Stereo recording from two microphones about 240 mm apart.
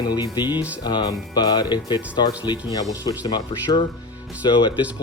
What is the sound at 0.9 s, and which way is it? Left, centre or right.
Speech, centre.